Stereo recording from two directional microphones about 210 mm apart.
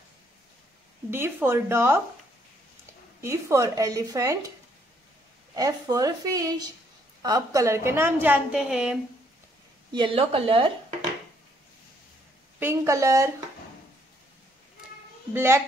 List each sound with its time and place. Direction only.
1.1 s a woman's voice: 10° right (ahead or behind)
3.2 s a woman's voice: 15° right (ahead or behind)
5.6 s a woman's voice: 20° right (ahead or behind)
9.9 s speech: 25° right (ahead or behind)
12.5 s a woman's voice: 10° right (ahead or behind)
15.3 s a woman's voice: 10° right (ahead or behind)